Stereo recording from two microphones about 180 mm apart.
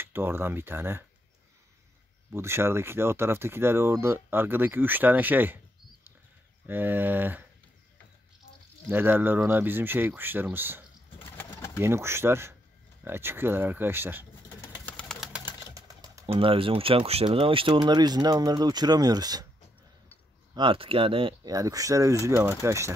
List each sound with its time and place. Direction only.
0.0 s speech: 10° right (ahead or behind)
2.3 s speech: 15° right (ahead or behind)
6.6 s speech: 10° right (ahead or behind)
8.9 s speech: 10° right (ahead or behind)
11.1 s pigeon: 10° left (ahead or behind)
11.8 s speech: 15° right (ahead or behind)
14.9 s engine: 5° left (ahead or behind)
15.7 s sewing machine: 20° right (ahead or behind)
16.3 s speech: 30° right (ahead or behind)
20.5 s speech: 30° right (ahead or behind)